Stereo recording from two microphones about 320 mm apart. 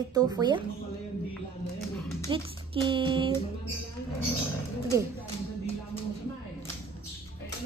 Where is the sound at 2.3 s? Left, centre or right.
Centre.